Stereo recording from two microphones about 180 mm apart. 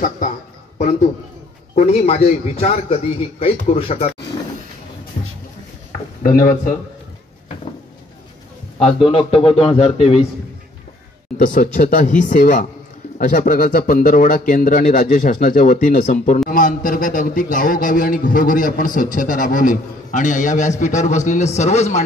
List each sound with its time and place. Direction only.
1.8 s a man's voice: 35° left (ahead or behind)
8.7 s a man's voice: 30° left (ahead or behind)
11.3 s a man's voice: 45° left (ahead or behind)